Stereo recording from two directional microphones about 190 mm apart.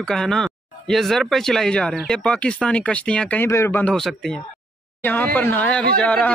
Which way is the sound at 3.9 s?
Centre (ahead or behind).